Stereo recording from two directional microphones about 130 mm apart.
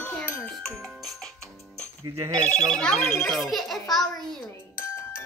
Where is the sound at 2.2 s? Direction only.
30° right (ahead or behind).